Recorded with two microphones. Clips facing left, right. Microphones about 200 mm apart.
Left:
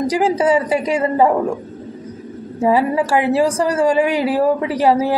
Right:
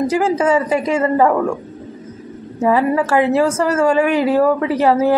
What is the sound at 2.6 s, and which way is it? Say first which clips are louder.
A woman's voice: even; 15° left (ahead or behind).